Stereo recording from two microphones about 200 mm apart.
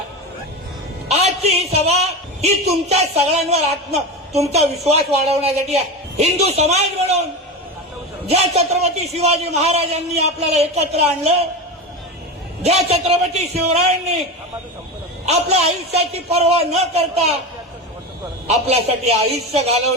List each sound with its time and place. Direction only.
1.0 s a sound: 30° right (ahead or behind)
2.4 s a man's voice: 35° right (ahead or behind)
8.3 s a man's voice: 35° right (ahead or behind)
12.6 s a man's voice: 30° right (ahead or behind)
15.3 s a man's voice: 30° right (ahead or behind)
18.4 s a man's voice: 30° right (ahead or behind)